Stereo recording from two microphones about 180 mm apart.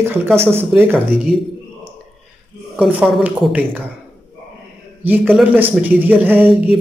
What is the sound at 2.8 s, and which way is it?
Speech, 5° right (ahead or behind).